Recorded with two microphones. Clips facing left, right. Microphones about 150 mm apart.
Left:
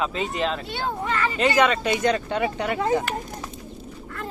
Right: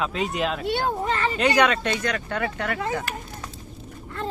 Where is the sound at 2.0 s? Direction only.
25° left (ahead or behind).